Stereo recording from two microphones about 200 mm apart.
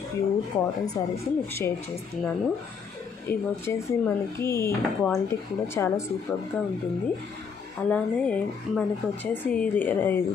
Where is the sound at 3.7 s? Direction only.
15° left (ahead or behind).